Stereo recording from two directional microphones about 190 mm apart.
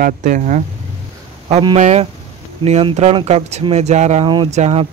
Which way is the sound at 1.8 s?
35° right (ahead or behind).